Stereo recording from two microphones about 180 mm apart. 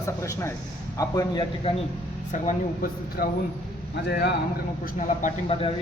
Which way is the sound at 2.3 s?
50° left (ahead or behind).